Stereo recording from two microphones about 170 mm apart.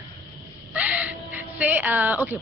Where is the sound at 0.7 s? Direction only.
10° right (ahead or behind).